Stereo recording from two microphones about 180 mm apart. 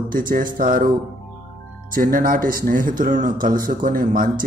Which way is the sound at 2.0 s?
50° right (ahead or behind).